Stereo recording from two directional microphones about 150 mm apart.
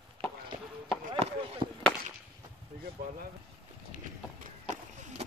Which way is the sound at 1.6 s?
35° right (ahead or behind).